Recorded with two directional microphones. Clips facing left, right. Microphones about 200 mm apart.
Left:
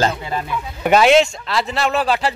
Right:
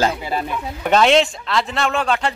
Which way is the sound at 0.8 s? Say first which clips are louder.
Left 2 dB; 5° left (ahead or behind).